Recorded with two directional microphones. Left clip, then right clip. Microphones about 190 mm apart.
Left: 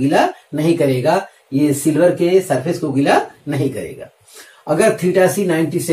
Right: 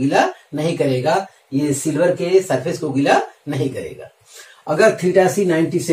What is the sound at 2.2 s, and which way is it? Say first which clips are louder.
Speech: left 2 dB; 30° right (ahead or behind).